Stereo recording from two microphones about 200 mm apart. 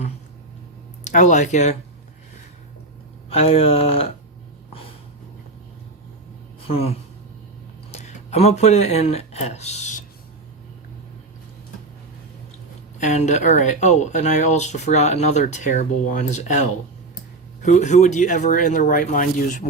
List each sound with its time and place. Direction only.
1.0 s speech: 35° left (ahead or behind)
3.2 s speech: 30° left (ahead or behind)
4.7 s snort: 30° left (ahead or behind)
6.6 s a woman's voice: 30° left (ahead or behind)
13.0 s speech: 35° left (ahead or behind)